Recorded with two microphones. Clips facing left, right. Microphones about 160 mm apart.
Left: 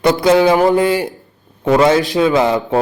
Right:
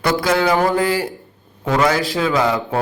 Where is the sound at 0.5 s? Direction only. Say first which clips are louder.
Left 4 dB; 20° left (ahead or behind).